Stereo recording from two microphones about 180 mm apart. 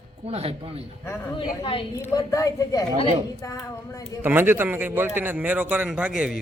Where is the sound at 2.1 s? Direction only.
20° left (ahead or behind).